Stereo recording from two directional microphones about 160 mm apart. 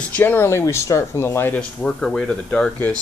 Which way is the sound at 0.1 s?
10° left (ahead or behind).